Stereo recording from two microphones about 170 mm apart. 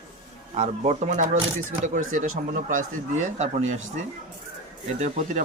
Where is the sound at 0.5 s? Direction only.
40° right (ahead or behind).